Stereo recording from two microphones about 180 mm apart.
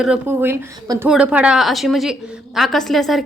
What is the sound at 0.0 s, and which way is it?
A woman's voice, 10° right (ahead or behind).